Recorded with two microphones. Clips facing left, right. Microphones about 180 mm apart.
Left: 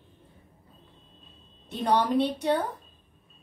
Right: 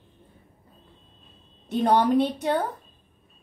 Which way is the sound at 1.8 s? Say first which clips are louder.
Right 3 dB; 50° right (ahead or behind).